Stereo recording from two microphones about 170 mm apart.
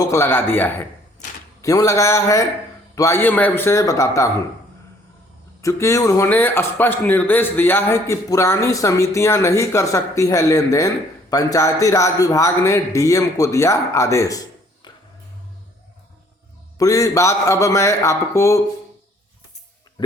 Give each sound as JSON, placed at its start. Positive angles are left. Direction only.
{"t": 0.0, "sound": "a man's voice", "side_deg": 15}
{"t": 5.6, "sound": "a man's voice", "side_deg": 20}
{"t": 16.7, "sound": "a man's voice", "side_deg": 20}
{"t": 20.0, "sound": "music", "side_deg": 25}